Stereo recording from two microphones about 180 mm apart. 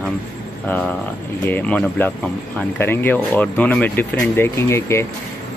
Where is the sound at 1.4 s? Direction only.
10° left (ahead or behind).